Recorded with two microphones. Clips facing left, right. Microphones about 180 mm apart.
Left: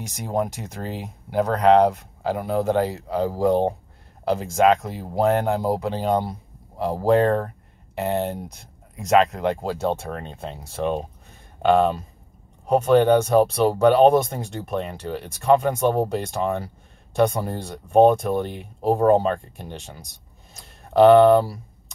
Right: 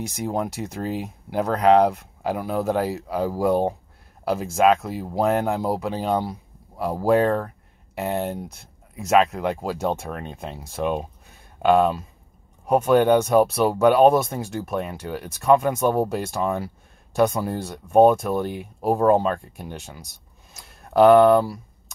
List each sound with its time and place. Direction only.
0.0 s speech: 5° right (ahead or behind)